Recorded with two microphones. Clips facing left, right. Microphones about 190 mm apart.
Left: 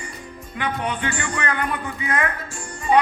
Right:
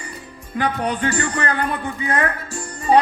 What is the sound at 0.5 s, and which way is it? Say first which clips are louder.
A man's voice: right 4 dB; 40° right (ahead or behind).